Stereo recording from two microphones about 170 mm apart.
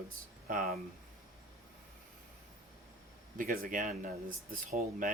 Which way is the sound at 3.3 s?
55° right (ahead or behind).